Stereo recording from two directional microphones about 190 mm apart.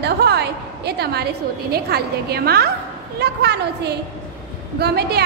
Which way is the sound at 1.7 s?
55° right (ahead or behind).